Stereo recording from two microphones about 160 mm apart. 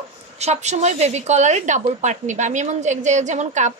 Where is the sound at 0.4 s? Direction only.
45° right (ahead or behind).